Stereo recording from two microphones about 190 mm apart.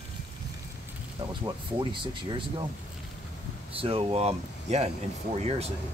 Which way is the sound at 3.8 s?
30° right (ahead or behind).